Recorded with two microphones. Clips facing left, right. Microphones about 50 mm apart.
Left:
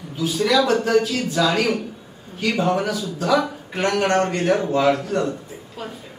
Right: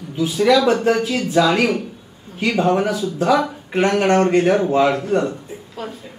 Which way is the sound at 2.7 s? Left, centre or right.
Right.